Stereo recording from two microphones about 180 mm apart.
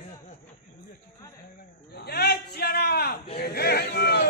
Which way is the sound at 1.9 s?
60° left (ahead or behind).